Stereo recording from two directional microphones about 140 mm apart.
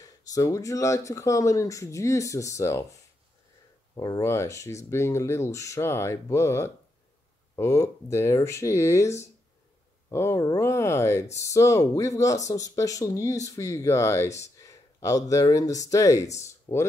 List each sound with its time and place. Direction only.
0.0 s speech: 25° left (ahead or behind)
3.9 s speech: 25° left (ahead or behind)
16.7 s speech: 40° left (ahead or behind)